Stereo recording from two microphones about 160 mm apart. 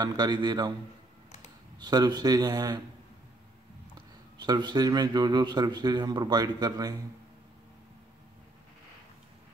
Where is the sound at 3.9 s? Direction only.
25° right (ahead or behind).